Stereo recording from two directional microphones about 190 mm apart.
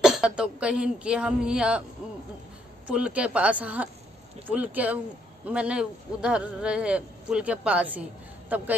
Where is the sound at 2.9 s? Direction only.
5° right (ahead or behind).